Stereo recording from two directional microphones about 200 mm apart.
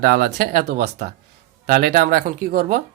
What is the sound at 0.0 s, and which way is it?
Speech, 50° right (ahead or behind).